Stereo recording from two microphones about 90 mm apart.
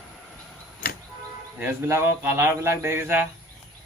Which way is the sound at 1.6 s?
30° right (ahead or behind).